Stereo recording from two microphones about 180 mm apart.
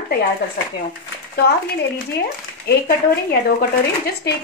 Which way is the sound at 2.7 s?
65° left (ahead or behind).